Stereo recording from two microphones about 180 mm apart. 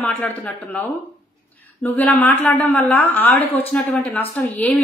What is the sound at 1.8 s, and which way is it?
A woman's voice, 10° left (ahead or behind).